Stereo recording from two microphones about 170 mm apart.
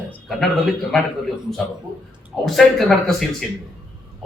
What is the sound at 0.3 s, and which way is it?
Speech, centre (ahead or behind).